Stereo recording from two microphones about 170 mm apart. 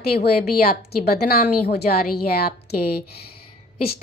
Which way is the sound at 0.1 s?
65° left (ahead or behind).